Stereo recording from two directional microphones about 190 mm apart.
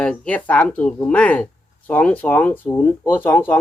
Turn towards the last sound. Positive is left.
turn(degrees=10)  # may be behind; listen again after turning